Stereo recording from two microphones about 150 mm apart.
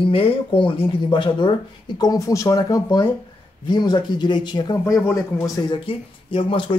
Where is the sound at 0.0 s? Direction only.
35° left (ahead or behind); by 5.2 s 20° left (ahead or behind).